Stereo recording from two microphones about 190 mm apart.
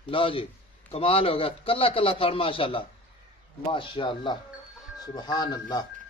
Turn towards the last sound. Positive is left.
turn(degrees=20)  # may be behind; listen again after turning